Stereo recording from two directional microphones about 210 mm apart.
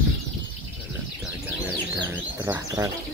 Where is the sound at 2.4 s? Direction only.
15° right (ahead or behind).